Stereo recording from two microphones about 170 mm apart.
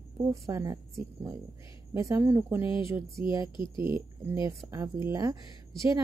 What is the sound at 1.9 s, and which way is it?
Speech, 15° right (ahead or behind).